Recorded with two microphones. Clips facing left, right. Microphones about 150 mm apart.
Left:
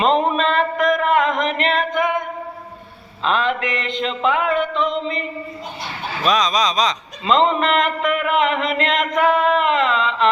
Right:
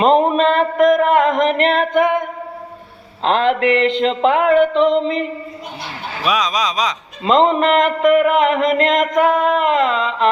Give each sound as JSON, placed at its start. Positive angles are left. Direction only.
{"t": 0.0, "sound": "music", "side_deg": -50}
{"t": 3.2, "sound": "speech", "side_deg": -70}
{"t": 6.2, "sound": "speech", "side_deg": -10}
{"t": 7.3, "sound": "a man's voice", "side_deg": -50}